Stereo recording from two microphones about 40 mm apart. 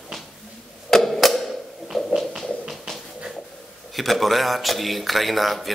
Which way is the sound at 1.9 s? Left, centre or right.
Centre.